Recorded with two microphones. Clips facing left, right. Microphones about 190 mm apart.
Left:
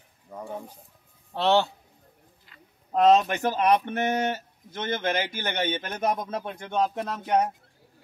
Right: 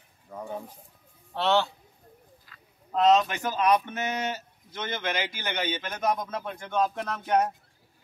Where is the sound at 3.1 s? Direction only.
45° left (ahead or behind).